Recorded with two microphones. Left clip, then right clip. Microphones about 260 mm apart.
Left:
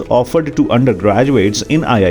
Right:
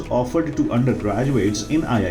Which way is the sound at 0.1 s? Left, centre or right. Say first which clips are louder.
Left 8 dB; left.